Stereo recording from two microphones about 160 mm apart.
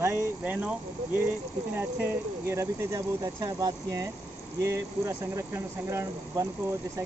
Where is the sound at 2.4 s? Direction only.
15° right (ahead or behind).